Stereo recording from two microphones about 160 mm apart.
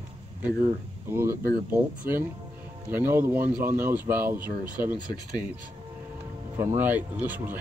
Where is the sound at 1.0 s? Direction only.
15° right (ahead or behind).